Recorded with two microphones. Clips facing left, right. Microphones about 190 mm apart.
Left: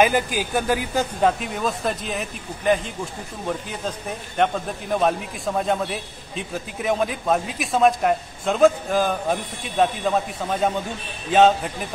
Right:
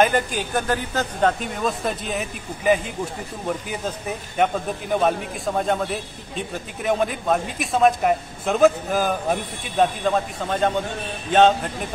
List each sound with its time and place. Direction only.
0.0 s a man's voice: 5° left (ahead or behind)
4.4 s a man's voice: centre (ahead or behind)